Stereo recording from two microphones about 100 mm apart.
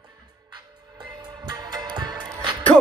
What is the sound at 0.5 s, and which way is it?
Music, 45° right (ahead or behind).